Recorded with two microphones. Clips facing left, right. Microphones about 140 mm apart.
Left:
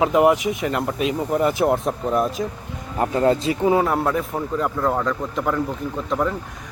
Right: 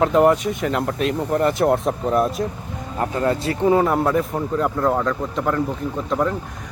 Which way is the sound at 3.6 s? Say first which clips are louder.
Right 2 dB; centre (ahead or behind).